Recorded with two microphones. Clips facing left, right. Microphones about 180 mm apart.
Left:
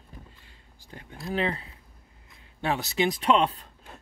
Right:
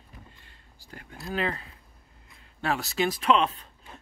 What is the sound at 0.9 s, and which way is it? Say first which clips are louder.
Speech: left 2 dB; 20° left (ahead or behind).